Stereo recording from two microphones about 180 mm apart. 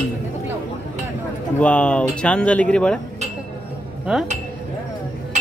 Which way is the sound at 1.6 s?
5° left (ahead or behind).